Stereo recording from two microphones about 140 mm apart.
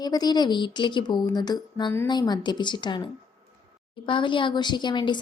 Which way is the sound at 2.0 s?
30° left (ahead or behind).